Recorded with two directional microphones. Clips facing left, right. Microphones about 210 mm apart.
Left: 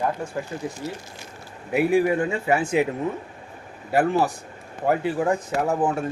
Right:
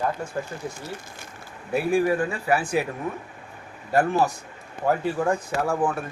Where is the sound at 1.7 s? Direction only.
20° left (ahead or behind).